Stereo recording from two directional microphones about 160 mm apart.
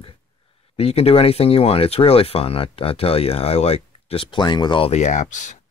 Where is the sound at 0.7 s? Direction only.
40° left (ahead or behind).